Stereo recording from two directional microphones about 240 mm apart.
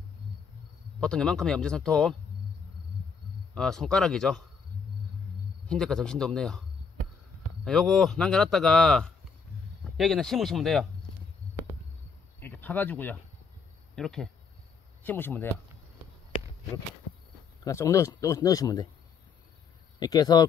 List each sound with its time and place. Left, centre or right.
1.0 s speech: centre
3.5 s speech: centre
5.7 s speech: centre
7.6 s speech: centre
12.4 s insect: centre
13.9 s speech: centre
17.6 s speech: centre
20.0 s speech: centre